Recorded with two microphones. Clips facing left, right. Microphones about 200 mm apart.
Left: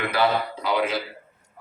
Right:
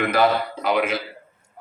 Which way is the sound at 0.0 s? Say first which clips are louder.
Right 3 dB; 45° right (ahead or behind).